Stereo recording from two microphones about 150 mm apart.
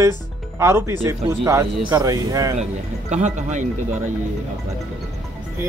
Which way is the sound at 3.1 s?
50° right (ahead or behind).